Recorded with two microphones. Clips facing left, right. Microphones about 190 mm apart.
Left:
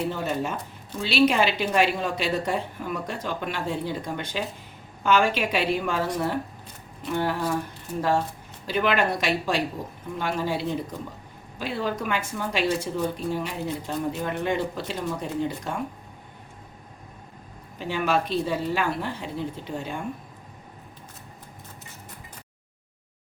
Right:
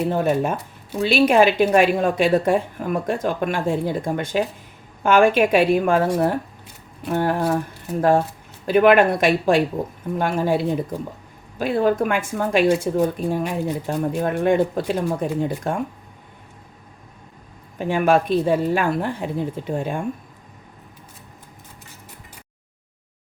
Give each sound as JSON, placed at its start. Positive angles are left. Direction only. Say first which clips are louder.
{"t": 0.1, "sound": "speech", "louder": "right 8 dB", "side_deg": -55}
{"t": 8.6, "sound": "speech", "louder": "right 9 dB", "side_deg": -55}
{"t": 17.7, "sound": "speech", "louder": "right 7 dB", "side_deg": -50}